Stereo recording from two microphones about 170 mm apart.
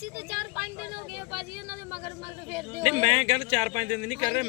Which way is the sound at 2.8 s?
40° right (ahead or behind).